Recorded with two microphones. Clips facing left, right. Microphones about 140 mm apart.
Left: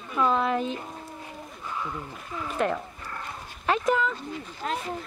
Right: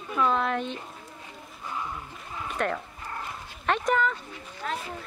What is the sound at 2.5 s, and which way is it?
Speech, 5° left (ahead or behind).